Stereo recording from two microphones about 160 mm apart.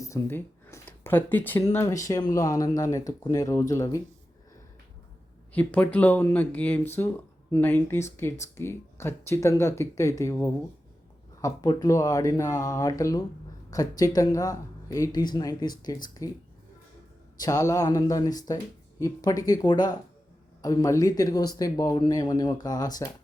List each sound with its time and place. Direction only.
0.0 s speech: 20° left (ahead or behind)
5.5 s speech: 10° left (ahead or behind)
17.4 s speech: 20° left (ahead or behind)